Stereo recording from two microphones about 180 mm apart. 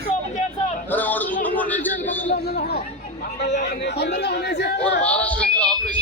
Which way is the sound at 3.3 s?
70° left (ahead or behind).